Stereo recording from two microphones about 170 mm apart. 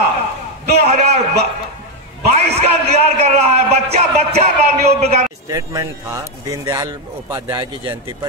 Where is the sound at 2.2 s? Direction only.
40° right (ahead or behind).